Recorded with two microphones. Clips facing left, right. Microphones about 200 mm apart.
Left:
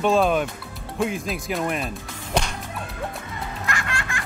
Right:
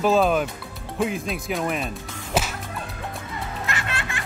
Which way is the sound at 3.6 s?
25° right (ahead or behind).